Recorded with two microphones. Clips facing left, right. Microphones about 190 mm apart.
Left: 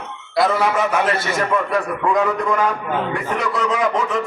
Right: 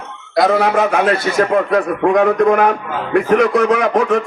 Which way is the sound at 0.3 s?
70° right (ahead or behind).